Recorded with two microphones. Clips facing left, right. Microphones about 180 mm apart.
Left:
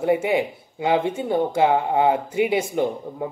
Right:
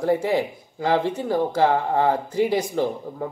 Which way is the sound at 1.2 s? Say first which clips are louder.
Left 1 dB; 25° left (ahead or behind).